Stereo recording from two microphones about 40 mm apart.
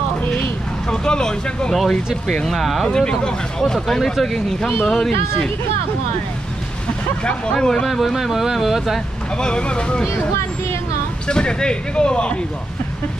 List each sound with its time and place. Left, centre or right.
0.8 s speech: centre
2.4 s speech: centre
2.9 s speech: centre
7.5 s speech: centre
7.9 s speech: centre
9.4 s speech: left
11.2 s speech: left